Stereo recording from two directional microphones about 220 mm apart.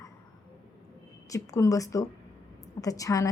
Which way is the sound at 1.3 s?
15° left (ahead or behind).